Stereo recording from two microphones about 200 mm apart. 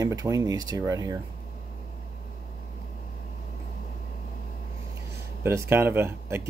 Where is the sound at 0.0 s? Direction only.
15° right (ahead or behind).